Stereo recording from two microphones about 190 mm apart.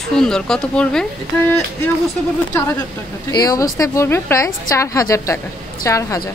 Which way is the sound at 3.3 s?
20° left (ahead or behind).